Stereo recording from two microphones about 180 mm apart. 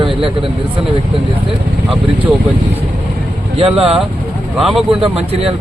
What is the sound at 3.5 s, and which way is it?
Speech, 30° right (ahead or behind).